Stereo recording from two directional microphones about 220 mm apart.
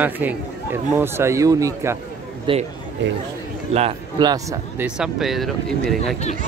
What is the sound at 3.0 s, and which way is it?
Speech, 55° right (ahead or behind).